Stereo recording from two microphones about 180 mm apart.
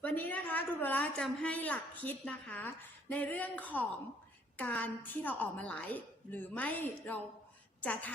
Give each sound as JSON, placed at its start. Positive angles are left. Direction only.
{"t": 0.0, "sound": "a woman's voice", "side_deg": 10}